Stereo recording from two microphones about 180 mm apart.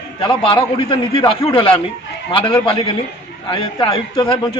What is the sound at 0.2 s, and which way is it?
A man's voice, 30° left (ahead or behind).